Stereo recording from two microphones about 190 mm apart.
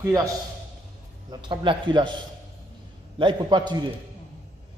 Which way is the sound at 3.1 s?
25° right (ahead or behind).